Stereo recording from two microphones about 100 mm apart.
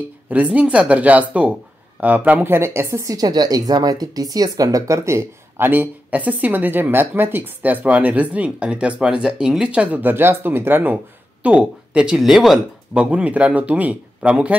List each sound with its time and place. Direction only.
0.3 s a woman's voice: 15° right (ahead or behind)
13.0 s speech: 15° right (ahead or behind)